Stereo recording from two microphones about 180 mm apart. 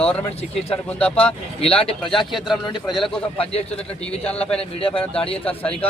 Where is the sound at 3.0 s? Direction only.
30° left (ahead or behind).